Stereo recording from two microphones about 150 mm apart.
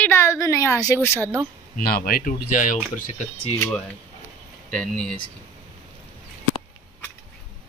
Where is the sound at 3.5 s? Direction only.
15° left (ahead or behind).